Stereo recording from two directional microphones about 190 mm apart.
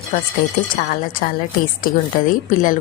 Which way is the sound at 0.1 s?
45° left (ahead or behind).